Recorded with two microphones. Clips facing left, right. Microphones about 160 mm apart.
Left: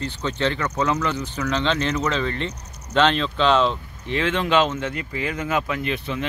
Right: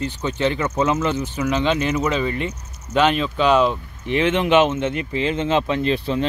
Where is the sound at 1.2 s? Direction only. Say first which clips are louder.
Right 3 dB; 10° right (ahead or behind); by 6.3 s 30° right (ahead or behind).